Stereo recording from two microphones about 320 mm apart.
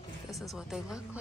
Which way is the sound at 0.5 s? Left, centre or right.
Centre.